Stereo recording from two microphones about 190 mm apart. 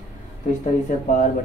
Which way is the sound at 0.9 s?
40° left (ahead or behind).